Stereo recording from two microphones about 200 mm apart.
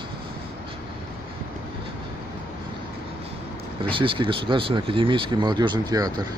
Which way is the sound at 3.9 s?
25° right (ahead or behind).